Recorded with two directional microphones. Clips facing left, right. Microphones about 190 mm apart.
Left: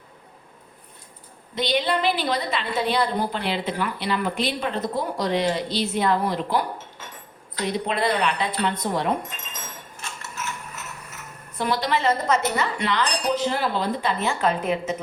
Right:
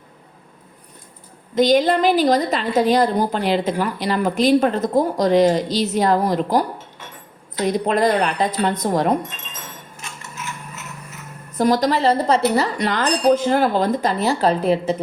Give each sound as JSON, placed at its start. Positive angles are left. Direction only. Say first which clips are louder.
{"t": 1.5, "sound": "a woman's voice", "louder": "right 8 dB", "side_deg": -45}
{"t": 7.7, "sound": "a woman's voice", "louder": "right 6 dB", "side_deg": -45}
{"t": 11.5, "sound": "a woman's voice", "louder": "right 7 dB", "side_deg": -40}